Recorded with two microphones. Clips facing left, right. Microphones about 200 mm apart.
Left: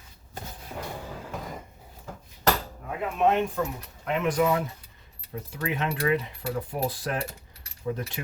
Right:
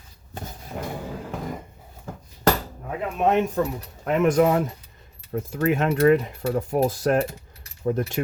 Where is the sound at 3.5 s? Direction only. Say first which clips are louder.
Right 5 dB; 45° right (ahead or behind).